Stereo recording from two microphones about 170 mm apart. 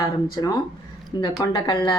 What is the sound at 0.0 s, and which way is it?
Speech, 25° left (ahead or behind).